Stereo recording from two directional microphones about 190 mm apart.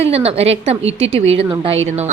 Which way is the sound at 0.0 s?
30° right (ahead or behind).